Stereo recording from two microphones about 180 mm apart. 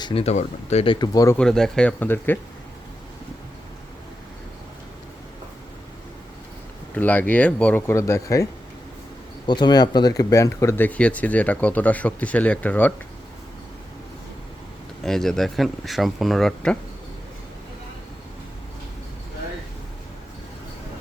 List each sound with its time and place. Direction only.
0.0 s speech: 30° left (ahead or behind)
1.4 s speech: 5° left (ahead or behind)
6.9 s speech: 10° left (ahead or behind)
9.5 s speech: 25° left (ahead or behind); by 12.9 s 10° left (ahead or behind)
15.0 s speech: centre (ahead or behind)